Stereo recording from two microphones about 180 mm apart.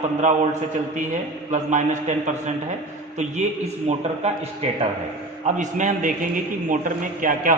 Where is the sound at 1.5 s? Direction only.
40° right (ahead or behind).